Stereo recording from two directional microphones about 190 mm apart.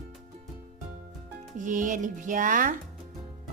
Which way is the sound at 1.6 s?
40° right (ahead or behind).